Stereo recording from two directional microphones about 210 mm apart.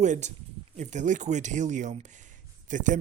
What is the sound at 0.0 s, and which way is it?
Speech, 35° right (ahead or behind).